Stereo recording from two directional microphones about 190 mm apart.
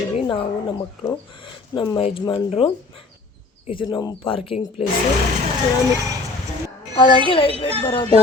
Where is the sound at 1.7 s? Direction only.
25° left (ahead or behind).